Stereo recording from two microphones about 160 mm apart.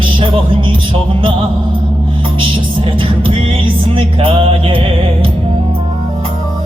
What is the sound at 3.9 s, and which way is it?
Music, 35° right (ahead or behind).